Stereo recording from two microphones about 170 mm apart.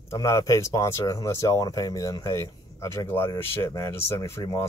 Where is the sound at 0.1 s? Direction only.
20° left (ahead or behind).